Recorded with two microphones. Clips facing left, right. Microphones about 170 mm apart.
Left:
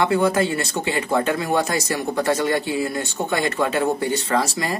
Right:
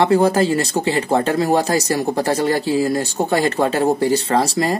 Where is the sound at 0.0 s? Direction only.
35° right (ahead or behind).